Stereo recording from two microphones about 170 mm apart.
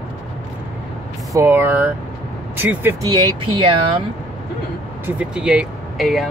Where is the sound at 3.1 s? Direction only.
25° right (ahead or behind).